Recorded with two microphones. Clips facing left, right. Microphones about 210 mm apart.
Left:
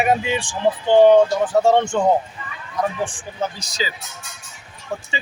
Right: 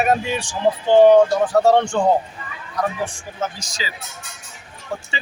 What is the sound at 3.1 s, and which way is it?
Speech, 35° left (ahead or behind).